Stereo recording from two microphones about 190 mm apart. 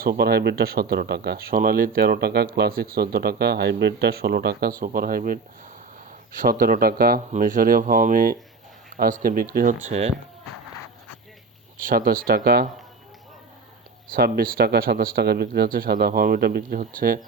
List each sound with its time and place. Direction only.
0.0 s speech: 55° right (ahead or behind)
9.9 s speech: 35° right (ahead or behind)
11.8 s speech: 50° right (ahead or behind)
14.1 s speech: 55° right (ahead or behind)